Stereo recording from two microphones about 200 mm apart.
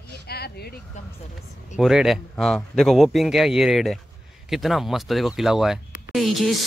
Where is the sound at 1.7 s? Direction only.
5° right (ahead or behind).